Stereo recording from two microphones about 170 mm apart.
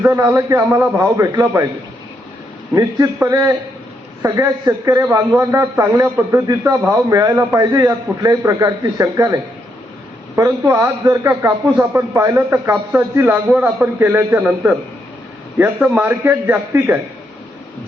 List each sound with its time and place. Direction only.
0.0 s a man's voice: 15° right (ahead or behind)
2.7 s a man's voice: 20° right (ahead or behind)
15.8 s a man's voice: 10° right (ahead or behind)